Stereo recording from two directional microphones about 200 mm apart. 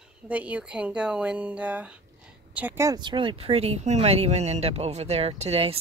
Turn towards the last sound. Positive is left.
turn(degrees=-30)  # may be behind; listen again after turning